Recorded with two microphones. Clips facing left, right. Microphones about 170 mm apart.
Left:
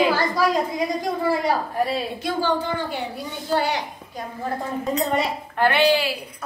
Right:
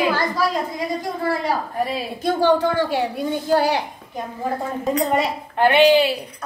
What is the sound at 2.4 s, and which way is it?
Speech, 80° right.